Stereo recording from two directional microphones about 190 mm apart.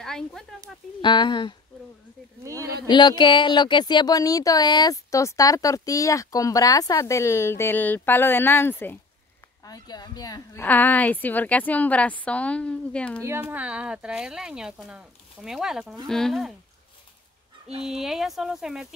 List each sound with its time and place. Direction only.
0.0 s speech: centre (ahead or behind)
1.0 s speech: 25° left (ahead or behind)
2.9 s speech: 25° left (ahead or behind); by 13.2 s 5° left (ahead or behind)
13.2 s speech: 10° right (ahead or behind)
17.8 s speech: centre (ahead or behind)